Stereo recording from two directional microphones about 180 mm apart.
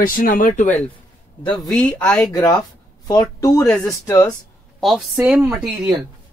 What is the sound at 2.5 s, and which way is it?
Speech, 20° left (ahead or behind).